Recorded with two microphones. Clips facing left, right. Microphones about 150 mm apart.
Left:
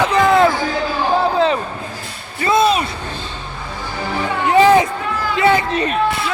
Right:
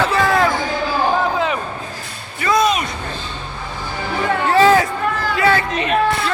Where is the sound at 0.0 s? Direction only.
20° left (ahead or behind).